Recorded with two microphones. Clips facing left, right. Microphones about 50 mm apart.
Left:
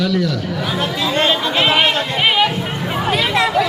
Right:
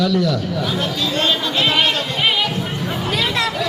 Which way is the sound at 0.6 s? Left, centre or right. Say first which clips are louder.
Left 1 dB; centre.